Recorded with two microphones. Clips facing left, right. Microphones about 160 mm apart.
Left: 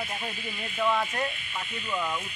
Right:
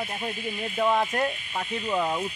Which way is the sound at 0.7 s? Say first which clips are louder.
Right 3 dB; 35° right (ahead or behind).